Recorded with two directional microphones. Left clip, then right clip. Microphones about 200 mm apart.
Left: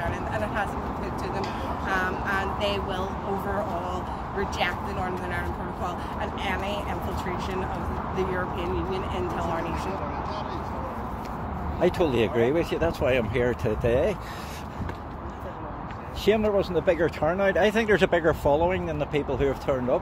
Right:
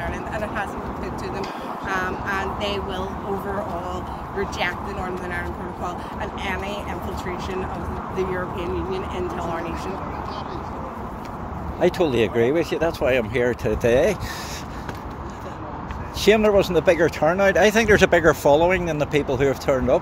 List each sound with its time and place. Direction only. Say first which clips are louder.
0.0 s vehicle: right 1 dB; 10° right (ahead or behind)
1.9 s speech: right 2 dB; 5° right (ahead or behind)
4.4 s speech: right 3 dB; 5° right (ahead or behind)
6.4 s speech: right 1 dB; 5° right (ahead or behind)
8.2 s speech: right 3 dB; 5° right (ahead or behind)
11.8 s speech: right 4 dB; 20° right (ahead or behind)
16.3 s speech: right 6 dB; 25° right (ahead or behind)